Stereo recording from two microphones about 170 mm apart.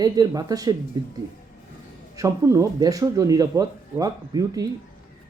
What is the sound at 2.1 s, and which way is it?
Speech, 20° right (ahead or behind).